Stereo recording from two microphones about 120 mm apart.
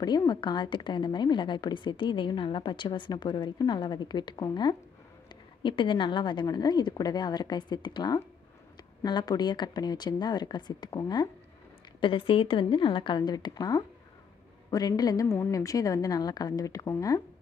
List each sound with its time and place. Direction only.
0.0 s a woman's voice: 35° left (ahead or behind)
12.0 s a woman's voice: 45° left (ahead or behind); by 16.9 s 30° left (ahead or behind)